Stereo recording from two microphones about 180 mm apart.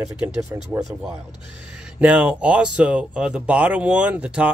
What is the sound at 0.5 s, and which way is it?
Speech, 15° right (ahead or behind).